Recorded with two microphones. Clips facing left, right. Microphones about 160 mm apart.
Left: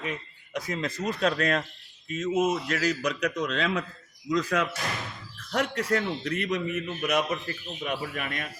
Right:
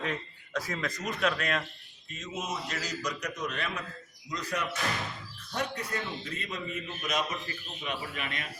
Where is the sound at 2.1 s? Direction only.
50° left (ahead or behind).